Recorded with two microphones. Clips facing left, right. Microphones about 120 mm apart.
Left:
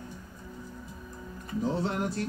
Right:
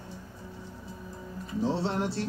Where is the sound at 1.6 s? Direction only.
30° right (ahead or behind).